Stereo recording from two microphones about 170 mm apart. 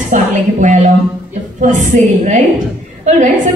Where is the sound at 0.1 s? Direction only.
45° right (ahead or behind).